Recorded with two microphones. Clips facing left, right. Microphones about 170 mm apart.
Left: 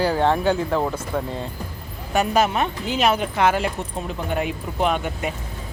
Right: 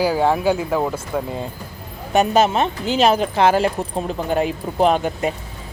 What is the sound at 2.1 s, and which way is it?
Speech, 25° right (ahead or behind).